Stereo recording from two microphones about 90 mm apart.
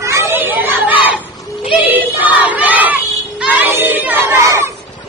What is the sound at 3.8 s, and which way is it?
Chatter, 20° right (ahead or behind).